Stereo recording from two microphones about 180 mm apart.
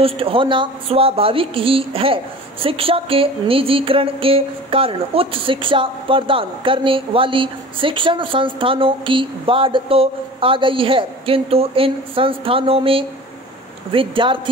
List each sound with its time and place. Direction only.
0.0 s speech: 30° right (ahead or behind)